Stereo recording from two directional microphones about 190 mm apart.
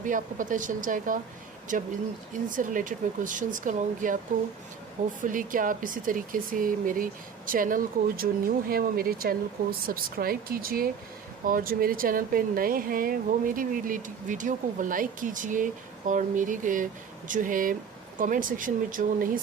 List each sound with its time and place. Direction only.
0.0 s speech: 45° right (ahead or behind)
5.2 s speech: 45° right (ahead or behind)